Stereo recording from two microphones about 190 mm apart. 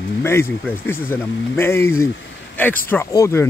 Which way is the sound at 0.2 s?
15° left (ahead or behind).